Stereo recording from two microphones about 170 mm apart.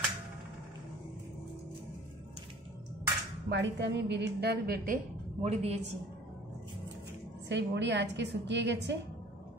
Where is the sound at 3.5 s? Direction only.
90° right; by 4.9 s 70° right (ahead or behind).